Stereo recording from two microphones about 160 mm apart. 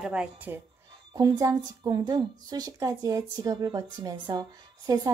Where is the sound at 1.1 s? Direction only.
25° right (ahead or behind).